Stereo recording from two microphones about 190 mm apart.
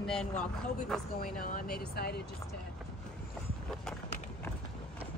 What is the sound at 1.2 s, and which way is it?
Speech, 45° left (ahead or behind).